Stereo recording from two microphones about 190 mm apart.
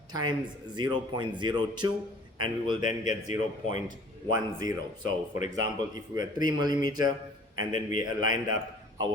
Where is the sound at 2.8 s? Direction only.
40° left (ahead or behind).